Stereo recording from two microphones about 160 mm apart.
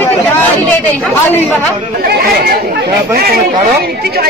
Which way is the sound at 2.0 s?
70° right (ahead or behind).